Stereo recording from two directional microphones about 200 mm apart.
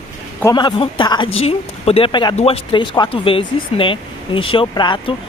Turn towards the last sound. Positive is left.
turn(degrees=25)  # may be behind; listen again after turning